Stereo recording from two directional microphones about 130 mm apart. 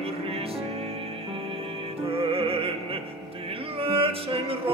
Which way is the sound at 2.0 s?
45° right (ahead or behind).